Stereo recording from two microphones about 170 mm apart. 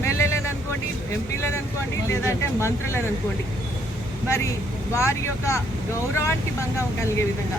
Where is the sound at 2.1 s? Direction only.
15° left (ahead or behind).